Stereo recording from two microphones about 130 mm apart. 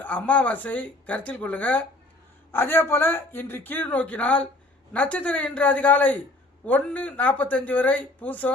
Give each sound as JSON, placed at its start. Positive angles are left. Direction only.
{"t": 0.0, "sound": "a man's voice", "side_deg": 10}